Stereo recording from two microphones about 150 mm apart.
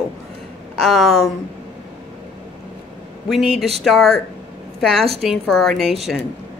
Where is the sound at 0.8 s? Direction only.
Centre (ahead or behind).